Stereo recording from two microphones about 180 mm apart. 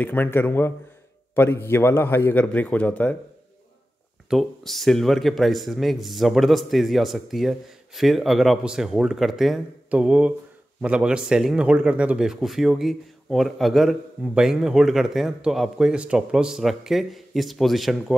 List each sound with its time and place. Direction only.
0.0 s a man's voice: 10° left (ahead or behind)
4.3 s speech: centre (ahead or behind)